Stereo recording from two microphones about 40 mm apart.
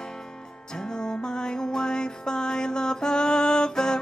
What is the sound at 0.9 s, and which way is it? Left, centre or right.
Music, centre.